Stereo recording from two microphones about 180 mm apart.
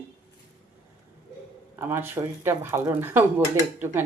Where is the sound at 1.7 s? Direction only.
15° right (ahead or behind).